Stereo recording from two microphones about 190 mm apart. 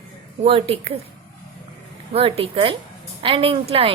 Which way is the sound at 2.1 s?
30° right (ahead or behind).